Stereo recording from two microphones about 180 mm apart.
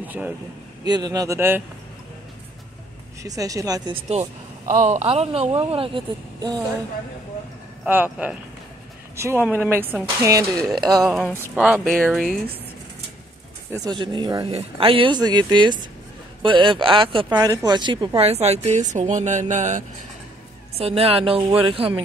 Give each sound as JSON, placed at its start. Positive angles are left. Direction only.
{"t": 0.0, "sound": "speech", "side_deg": -10}
{"t": 0.8, "sound": "speech", "side_deg": -20}
{"t": 3.2, "sound": "speech", "side_deg": -20}
{"t": 4.1, "sound": "speech", "side_deg": -40}
{"t": 7.8, "sound": "speech", "side_deg": -10}
{"t": 10.6, "sound": "speech", "side_deg": 0}
{"t": 13.8, "sound": "speech", "side_deg": -25}